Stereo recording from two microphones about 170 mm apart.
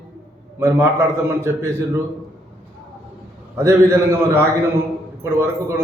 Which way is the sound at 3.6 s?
15° right (ahead or behind).